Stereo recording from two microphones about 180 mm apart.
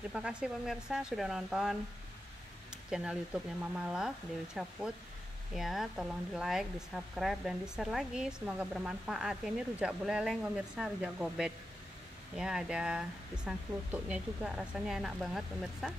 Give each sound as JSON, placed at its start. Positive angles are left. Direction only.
{"t": 0.1, "sound": "speech", "side_deg": -5}
{"t": 2.7, "sound": "a sound", "side_deg": -5}
{"t": 3.7, "sound": "speech", "side_deg": -5}